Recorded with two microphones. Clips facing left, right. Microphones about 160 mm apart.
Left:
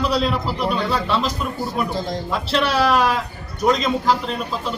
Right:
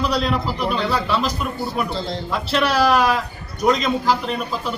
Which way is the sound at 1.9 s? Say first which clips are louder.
Left 1 dB; 15° left (ahead or behind).